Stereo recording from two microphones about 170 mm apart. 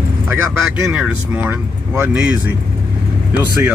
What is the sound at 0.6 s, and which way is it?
Speech, centre (ahead or behind).